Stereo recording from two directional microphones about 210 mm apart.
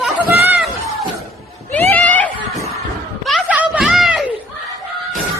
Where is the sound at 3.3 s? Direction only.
5° right (ahead or behind).